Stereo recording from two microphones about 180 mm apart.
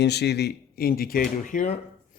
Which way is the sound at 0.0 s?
65° left (ahead or behind).